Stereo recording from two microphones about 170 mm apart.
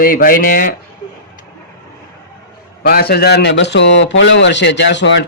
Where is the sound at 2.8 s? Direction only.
65° left (ahead or behind).